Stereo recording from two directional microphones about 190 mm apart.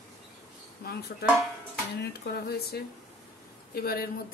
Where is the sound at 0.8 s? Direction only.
55° left (ahead or behind).